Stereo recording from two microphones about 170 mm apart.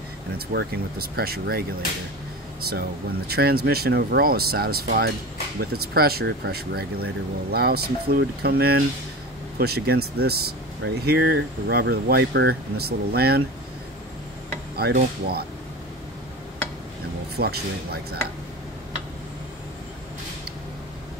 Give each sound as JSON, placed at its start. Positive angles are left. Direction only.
{"t": 0.5, "sound": "speech", "side_deg": -65}
{"t": 2.7, "sound": "speech", "side_deg": -65}
{"t": 14.8, "sound": "speech", "side_deg": -65}
{"t": 17.4, "sound": "speech", "side_deg": -65}